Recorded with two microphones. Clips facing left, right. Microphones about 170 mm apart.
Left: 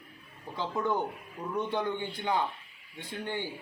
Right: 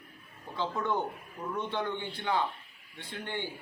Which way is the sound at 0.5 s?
10° left (ahead or behind).